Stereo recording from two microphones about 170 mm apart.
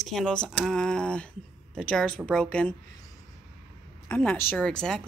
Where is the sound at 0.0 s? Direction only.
5° left (ahead or behind).